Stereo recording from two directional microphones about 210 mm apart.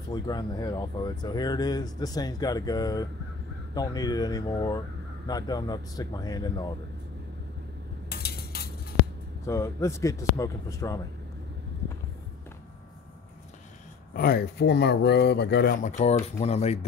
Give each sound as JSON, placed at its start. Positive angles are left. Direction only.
{"t": 0.1, "sound": "speech", "side_deg": 20}
{"t": 8.1, "sound": "cutlery", "side_deg": 50}
{"t": 9.5, "sound": "speech", "side_deg": 15}
{"t": 14.1, "sound": "speech", "side_deg": 45}